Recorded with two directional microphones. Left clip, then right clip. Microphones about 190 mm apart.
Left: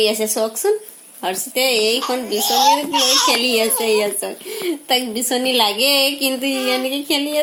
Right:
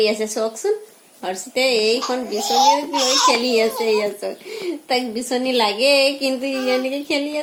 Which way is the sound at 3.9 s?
30° left (ahead or behind).